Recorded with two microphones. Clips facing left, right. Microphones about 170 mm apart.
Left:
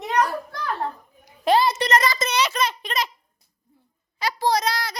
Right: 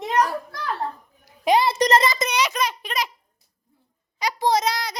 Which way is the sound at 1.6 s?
30° right (ahead or behind).